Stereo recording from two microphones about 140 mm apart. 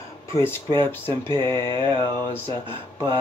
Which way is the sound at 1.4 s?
20° left (ahead or behind).